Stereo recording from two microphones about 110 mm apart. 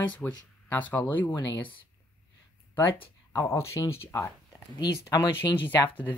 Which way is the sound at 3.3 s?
25° left (ahead or behind).